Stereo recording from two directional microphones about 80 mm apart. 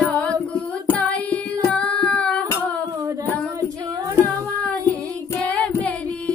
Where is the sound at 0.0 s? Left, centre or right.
Centre.